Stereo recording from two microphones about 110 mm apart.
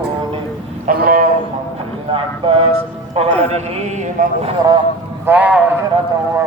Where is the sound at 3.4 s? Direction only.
80° right.